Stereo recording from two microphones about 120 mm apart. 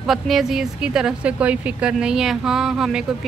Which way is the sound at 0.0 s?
Centre (ahead or behind).